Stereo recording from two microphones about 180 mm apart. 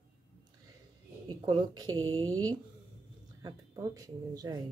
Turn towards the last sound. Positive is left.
turn(degrees=-20)  # may be behind; listen again after turning